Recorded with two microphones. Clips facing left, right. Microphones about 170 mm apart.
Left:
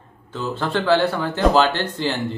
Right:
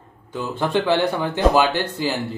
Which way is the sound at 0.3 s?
15° right (ahead or behind).